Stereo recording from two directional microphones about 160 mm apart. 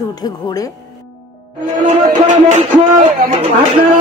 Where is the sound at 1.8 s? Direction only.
50° right (ahead or behind).